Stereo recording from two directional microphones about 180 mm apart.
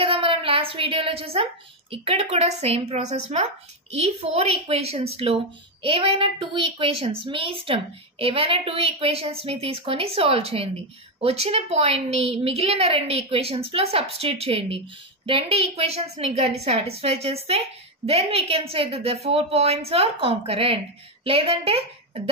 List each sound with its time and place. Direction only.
0.0 s a woman's voice: 30° right (ahead or behind)